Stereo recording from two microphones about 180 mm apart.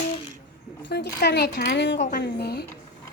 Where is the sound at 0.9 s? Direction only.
65° left (ahead or behind).